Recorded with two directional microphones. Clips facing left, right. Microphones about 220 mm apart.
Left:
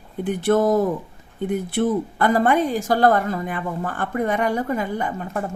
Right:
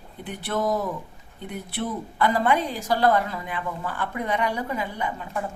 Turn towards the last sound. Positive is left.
turn(degrees=50)  # may be behind; listen again after turning